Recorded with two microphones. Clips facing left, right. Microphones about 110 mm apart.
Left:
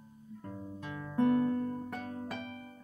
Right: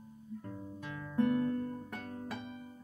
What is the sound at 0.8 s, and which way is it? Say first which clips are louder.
Music: left 2 dB; 10° left (ahead or behind).